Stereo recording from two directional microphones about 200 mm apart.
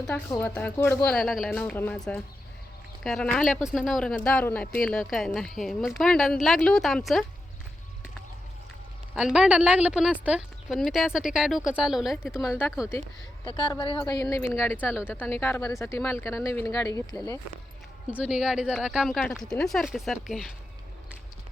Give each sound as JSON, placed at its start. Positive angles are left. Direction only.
{"t": 0.3, "sound": "speech", "side_deg": 10}
{"t": 9.1, "sound": "speech", "side_deg": -5}
{"t": 13.4, "sound": "speech", "side_deg": 20}
{"t": 18.1, "sound": "speech", "side_deg": -5}